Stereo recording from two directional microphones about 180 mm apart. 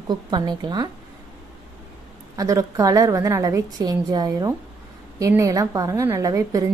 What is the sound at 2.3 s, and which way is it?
A woman's voice, 20° right (ahead or behind).